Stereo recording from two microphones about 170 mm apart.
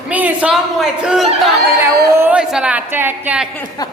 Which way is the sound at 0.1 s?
10° right (ahead or behind).